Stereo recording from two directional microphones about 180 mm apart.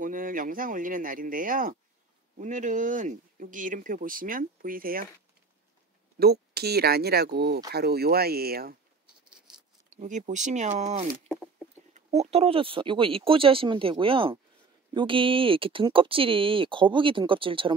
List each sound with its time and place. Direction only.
0.0 s speech: 50° right (ahead or behind)
6.1 s speech: 60° right (ahead or behind)
9.0 s a sound: 5° right (ahead or behind)
9.9 s speech: 45° right (ahead or behind)